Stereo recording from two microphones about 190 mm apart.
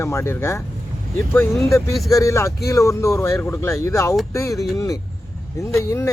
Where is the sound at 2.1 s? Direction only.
15° left (ahead or behind).